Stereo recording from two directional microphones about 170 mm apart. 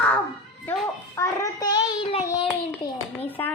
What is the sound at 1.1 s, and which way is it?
Child singing, 20° left (ahead or behind).